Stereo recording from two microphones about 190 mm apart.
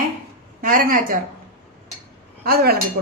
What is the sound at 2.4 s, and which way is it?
Speech, 55° right (ahead or behind).